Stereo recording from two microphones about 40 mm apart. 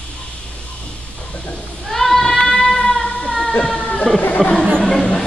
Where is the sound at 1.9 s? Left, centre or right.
Centre.